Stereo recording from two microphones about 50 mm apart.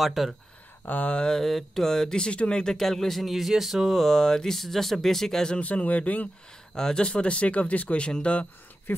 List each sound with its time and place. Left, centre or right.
0.0 s speech: centre
0.8 s speech: left
1.1 s speech: centre
5.6 s speech: left
6.7 s speech: centre